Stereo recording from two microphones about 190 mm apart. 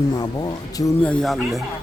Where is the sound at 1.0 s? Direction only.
5° left (ahead or behind).